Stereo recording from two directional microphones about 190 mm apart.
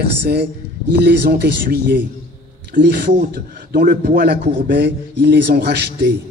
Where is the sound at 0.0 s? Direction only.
60° right (ahead or behind).